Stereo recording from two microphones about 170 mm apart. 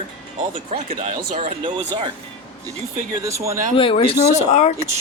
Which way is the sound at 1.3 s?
35° right (ahead or behind).